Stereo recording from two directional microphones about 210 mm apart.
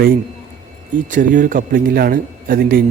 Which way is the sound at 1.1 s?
40° right (ahead or behind).